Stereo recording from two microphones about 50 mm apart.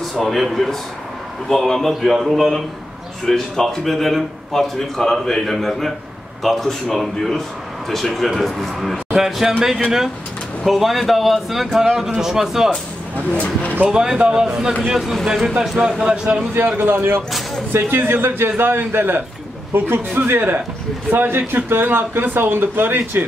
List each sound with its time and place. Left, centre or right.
0.0 s a man's voice: centre
10.6 s a man's voice: centre
13.3 s speech: left
13.8 s a man's voice: centre
16.5 s speech: right